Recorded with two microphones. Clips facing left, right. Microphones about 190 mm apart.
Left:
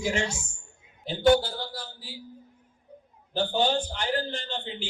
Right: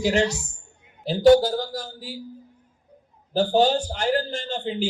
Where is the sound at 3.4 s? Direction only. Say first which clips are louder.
Right 6 dB; 40° right (ahead or behind).